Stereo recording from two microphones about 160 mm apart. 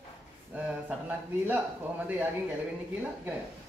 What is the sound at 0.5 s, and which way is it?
Speech, 10° right (ahead or behind).